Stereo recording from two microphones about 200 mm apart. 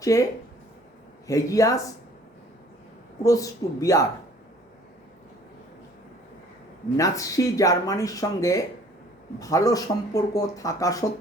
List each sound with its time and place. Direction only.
0.0 s speech: 15° left (ahead or behind)
1.3 s speech: 15° left (ahead or behind)
3.2 s speech: 15° left (ahead or behind)
6.9 s speech: 15° left (ahead or behind)